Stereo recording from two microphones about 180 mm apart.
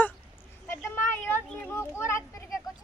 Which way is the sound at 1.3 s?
10° left (ahead or behind).